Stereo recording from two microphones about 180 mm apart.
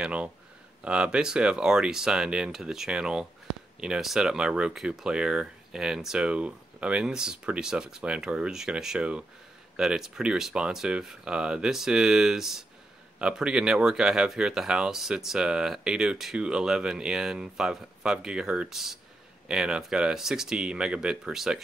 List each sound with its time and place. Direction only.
0.0 s speech: 5° right (ahead or behind)